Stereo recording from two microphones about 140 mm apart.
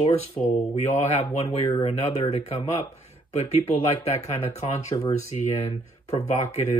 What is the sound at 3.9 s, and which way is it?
Speech, 50° left (ahead or behind).